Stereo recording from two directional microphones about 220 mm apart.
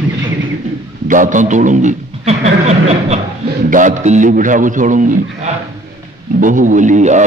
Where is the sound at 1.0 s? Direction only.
35° right (ahead or behind).